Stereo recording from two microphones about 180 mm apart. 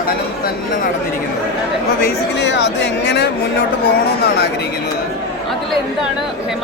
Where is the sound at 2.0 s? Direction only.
80° left.